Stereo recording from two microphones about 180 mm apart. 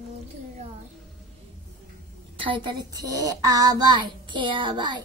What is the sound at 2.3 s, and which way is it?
A child's voice, 30° right (ahead or behind).